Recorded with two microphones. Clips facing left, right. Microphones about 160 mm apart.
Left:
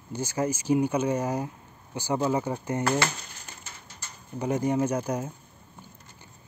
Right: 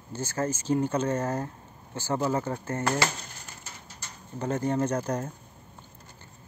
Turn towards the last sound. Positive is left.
turn(degrees=10)  # may be behind; listen again after turning